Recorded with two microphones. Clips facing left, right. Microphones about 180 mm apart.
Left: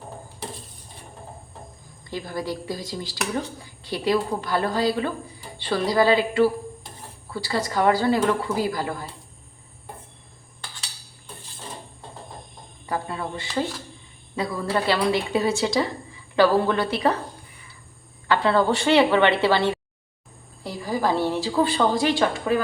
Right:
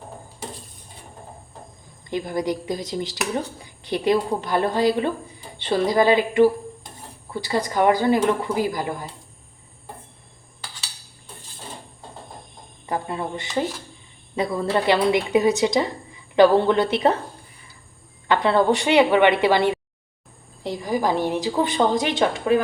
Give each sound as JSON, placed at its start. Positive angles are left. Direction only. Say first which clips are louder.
{"t": 2.0, "sound": "a woman's voice", "louder": "right 5 dB", "side_deg": -20}
{"t": 12.8, "sound": "a sound", "louder": "right 2 dB", "side_deg": -20}
{"t": 14.3, "sound": "a woman's voice", "louder": "right 3 dB", "side_deg": -20}
{"t": 18.3, "sound": "a woman's voice", "louder": "right 2 dB", "side_deg": -20}